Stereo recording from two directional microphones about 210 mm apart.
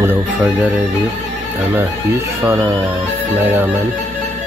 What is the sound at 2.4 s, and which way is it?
Speech, 10° right (ahead or behind).